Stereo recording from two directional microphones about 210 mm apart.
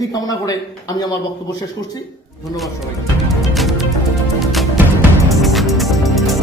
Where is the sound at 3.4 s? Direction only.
Centre (ahead or behind).